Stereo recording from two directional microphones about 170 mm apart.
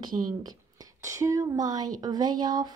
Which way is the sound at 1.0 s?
20° right (ahead or behind).